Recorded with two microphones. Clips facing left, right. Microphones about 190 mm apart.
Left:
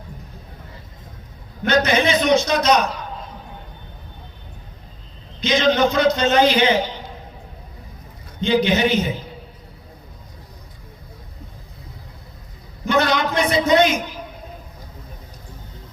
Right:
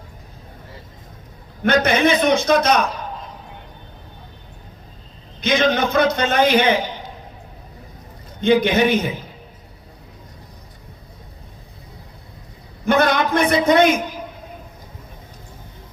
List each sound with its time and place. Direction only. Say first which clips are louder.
1.6 s a man's voice: right 2 dB; 55° right (ahead or behind)
5.4 s a man's voice: left 1 dB; 55° right (ahead or behind)
8.4 s a man's voice: right 2 dB; 55° right (ahead or behind)
12.8 s a man's voice: right 2 dB; 55° right (ahead or behind)